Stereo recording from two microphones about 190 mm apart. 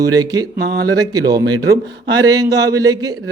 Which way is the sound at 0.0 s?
20° right (ahead or behind).